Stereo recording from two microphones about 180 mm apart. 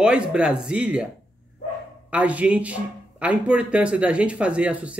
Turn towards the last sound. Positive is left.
turn(degrees=-5)  # may be behind; listen again after turning